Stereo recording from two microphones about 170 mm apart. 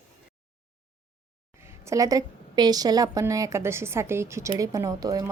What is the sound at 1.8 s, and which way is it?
A woman's voice, 20° right (ahead or behind).